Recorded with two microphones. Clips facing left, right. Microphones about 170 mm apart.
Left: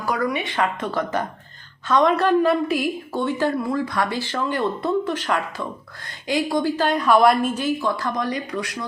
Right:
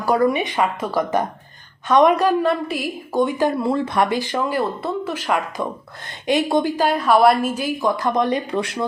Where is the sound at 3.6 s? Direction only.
25° right (ahead or behind).